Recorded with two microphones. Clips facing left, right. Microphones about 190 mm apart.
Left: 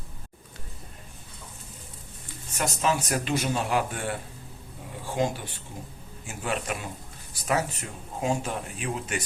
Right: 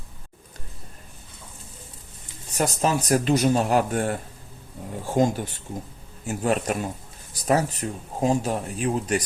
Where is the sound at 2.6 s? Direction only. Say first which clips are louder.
Right 4 dB; 40° right (ahead or behind).